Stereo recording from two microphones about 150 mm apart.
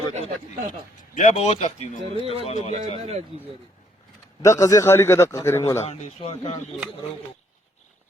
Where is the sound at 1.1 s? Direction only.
50° left (ahead or behind).